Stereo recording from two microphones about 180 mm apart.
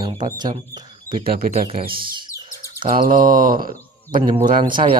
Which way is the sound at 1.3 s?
55° right (ahead or behind).